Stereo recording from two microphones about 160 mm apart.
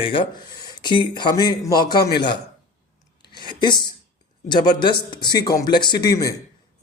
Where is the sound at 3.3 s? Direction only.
30° left (ahead or behind).